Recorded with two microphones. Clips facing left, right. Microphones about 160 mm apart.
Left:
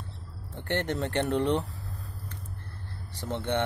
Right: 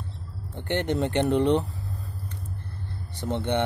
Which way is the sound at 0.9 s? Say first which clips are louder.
Right 4 dB; 10° right (ahead or behind).